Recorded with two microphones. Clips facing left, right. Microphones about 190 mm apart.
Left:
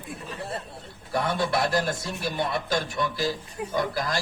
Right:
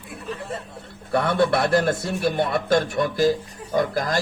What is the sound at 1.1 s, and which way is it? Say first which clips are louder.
A man's voice: right 6 dB; 60° right (ahead or behind).